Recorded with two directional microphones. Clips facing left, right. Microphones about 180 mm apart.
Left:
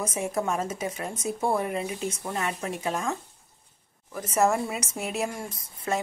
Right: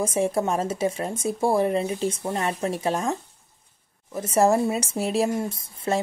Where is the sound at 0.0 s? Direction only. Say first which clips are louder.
Right 5 dB; 30° right (ahead or behind).